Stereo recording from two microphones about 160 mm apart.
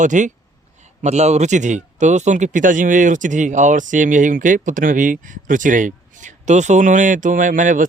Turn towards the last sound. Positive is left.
turn(degrees=-50)  # may be behind; listen again after turning